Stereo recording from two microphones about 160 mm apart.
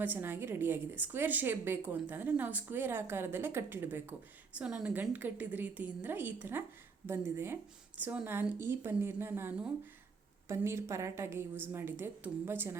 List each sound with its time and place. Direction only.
0.0 s a woman's voice: 10° right (ahead or behind)